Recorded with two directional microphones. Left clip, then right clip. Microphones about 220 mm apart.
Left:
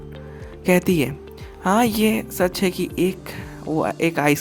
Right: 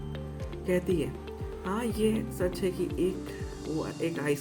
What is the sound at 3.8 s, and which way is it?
Speech, 50° left (ahead or behind).